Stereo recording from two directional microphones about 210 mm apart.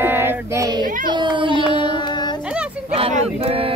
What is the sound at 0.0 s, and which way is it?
Child singing, 10° right (ahead or behind).